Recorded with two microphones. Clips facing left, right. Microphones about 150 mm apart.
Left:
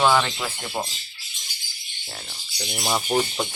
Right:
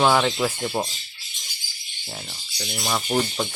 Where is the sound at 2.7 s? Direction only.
15° left (ahead or behind).